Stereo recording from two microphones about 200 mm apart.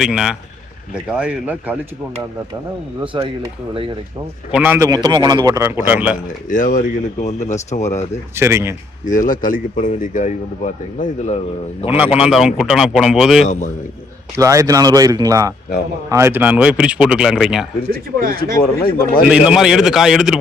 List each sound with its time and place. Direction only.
0.0 s a man's voice: 5° right (ahead or behind)
3.1 s speech: 25° right (ahead or behind)
4.5 s a man's voice: 10° right (ahead or behind)
6.5 s speech: 40° left (ahead or behind)
8.4 s a man's voice: 10° right (ahead or behind)
9.0 s speech: 40° left (ahead or behind)
11.9 s a man's voice: 10° right (ahead or behind)
14.3 s a man's voice: 15° right (ahead or behind)
18.2 s speech: 45° right (ahead or behind)
18.6 s speech: 45° left (ahead or behind)
19.3 s a man's voice: 5° right (ahead or behind)